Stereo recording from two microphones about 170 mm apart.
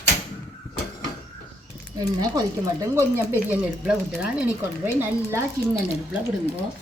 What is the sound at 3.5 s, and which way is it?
Speech, 5° right (ahead or behind).